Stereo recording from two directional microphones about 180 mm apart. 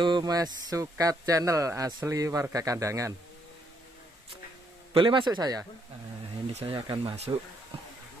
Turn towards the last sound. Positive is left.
turn(degrees=-25)  # may be behind; listen again after turning